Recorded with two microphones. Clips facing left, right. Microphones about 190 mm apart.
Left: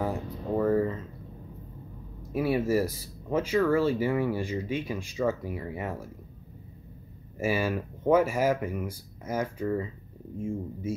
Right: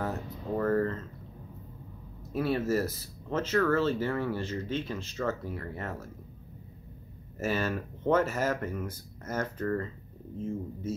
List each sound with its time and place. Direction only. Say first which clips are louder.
0.0 s a sound: left 3 dB; 10° left (ahead or behind)
2.3 s speech: left 3 dB; 10° left (ahead or behind)
7.3 s speech: left 3 dB; 10° left (ahead or behind)